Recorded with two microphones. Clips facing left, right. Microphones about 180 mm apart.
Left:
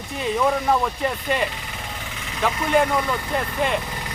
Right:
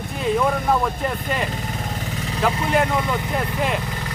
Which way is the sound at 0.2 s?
Centre (ahead or behind).